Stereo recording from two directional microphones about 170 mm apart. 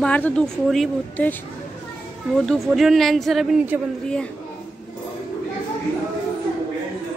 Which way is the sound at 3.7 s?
10° right (ahead or behind).